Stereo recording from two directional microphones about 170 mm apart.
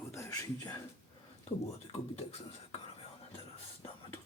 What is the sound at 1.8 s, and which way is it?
Speech, 35° left (ahead or behind).